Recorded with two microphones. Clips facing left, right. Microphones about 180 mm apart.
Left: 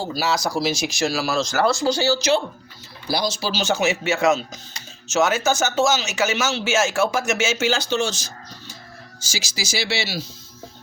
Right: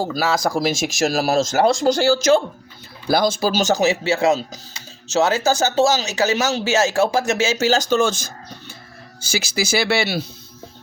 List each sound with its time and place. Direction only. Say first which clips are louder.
0.0 s speech: right 3 dB; 50° right (ahead or behind)
9.3 s speech: right 7 dB; 55° right (ahead or behind)